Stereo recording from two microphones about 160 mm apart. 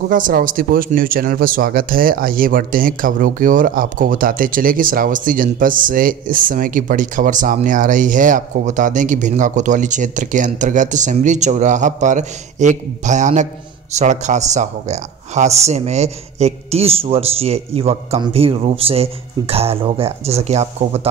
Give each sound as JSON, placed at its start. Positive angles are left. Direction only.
{"t": 0.1, "sound": "a man's voice", "side_deg": -60}